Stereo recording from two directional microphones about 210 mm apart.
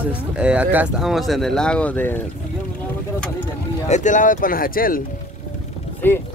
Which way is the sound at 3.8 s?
35° left (ahead or behind).